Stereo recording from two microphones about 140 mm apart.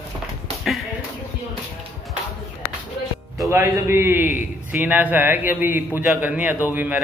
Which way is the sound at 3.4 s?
15° right (ahead or behind).